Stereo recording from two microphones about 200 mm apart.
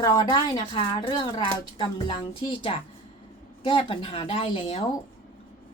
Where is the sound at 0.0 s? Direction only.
20° left (ahead or behind).